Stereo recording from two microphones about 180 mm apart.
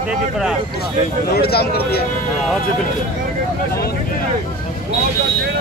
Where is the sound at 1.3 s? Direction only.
60° left (ahead or behind).